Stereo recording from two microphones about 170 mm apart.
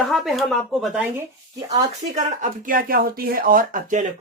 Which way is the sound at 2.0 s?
45° right (ahead or behind).